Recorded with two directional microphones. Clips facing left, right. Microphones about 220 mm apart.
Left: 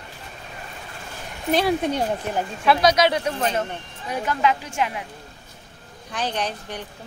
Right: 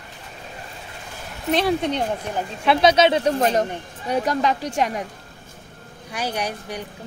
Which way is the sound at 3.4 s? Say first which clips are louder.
Right 4 dB; 35° right (ahead or behind).